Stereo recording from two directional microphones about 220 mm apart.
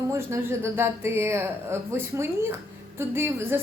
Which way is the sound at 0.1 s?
10° right (ahead or behind).